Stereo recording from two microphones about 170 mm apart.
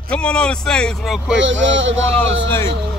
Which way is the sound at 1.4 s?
90° right.